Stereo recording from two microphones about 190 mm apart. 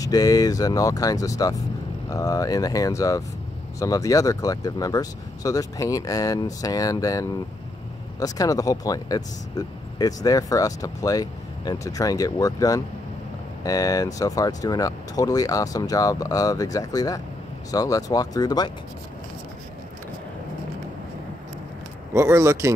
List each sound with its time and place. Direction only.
0.0 s speech: 20° left (ahead or behind)
22.1 s speech: 15° right (ahead or behind)